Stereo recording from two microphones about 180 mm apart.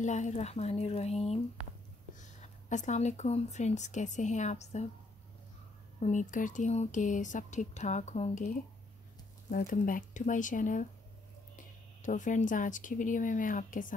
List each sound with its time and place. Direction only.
0.0 s speech: 40° left (ahead or behind)
5.9 s speech: 40° left (ahead or behind)